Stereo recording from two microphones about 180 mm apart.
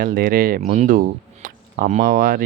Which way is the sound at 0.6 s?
40° right (ahead or behind).